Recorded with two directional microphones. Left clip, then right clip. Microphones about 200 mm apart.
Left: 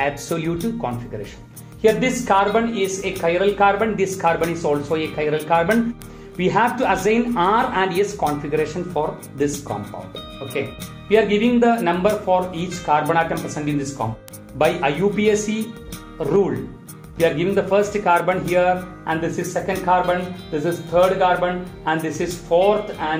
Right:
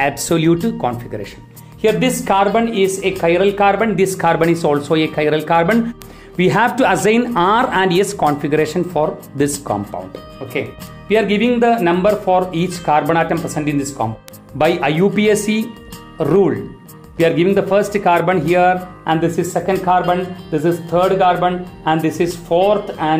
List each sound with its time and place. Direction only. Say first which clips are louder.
0.0 s a woman's voice: right 7 dB; 50° right (ahead or behind)